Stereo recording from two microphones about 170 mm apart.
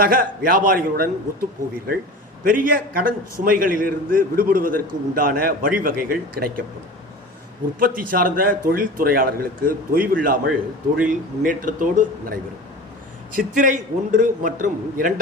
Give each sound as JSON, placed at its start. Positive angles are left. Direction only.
{"t": 0.0, "sound": "a man's voice", "side_deg": -60}
{"t": 7.8, "sound": "a man's voice", "side_deg": -60}
{"t": 13.3, "sound": "a man's voice", "side_deg": -50}